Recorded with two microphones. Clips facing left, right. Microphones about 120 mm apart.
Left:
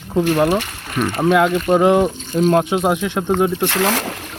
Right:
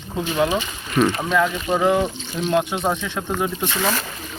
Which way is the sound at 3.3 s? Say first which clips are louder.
Left 7 dB; 70° left (ahead or behind).